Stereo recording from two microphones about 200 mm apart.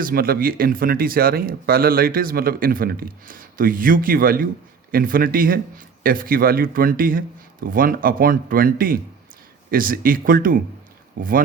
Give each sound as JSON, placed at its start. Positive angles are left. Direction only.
{"t": 0.0, "sound": "speech", "side_deg": -50}